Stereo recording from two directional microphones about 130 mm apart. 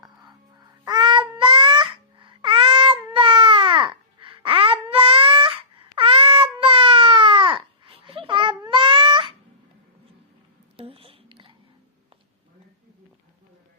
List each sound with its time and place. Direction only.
0.9 s music: 35° right (ahead or behind)
6.0 s cat: 45° right (ahead or behind)
10.8 s whispering: 45° right (ahead or behind)